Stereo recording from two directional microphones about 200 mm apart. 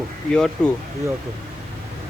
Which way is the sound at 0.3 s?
5° left (ahead or behind).